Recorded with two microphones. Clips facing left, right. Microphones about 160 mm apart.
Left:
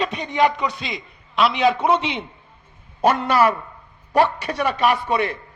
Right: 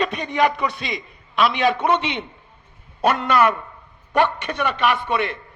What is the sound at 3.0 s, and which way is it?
A man's voice, 30° left (ahead or behind).